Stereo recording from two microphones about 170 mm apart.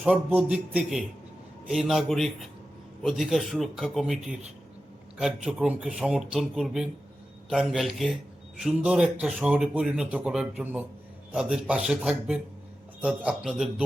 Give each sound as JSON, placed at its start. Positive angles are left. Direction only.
{"t": 0.0, "sound": "speech", "side_deg": -10}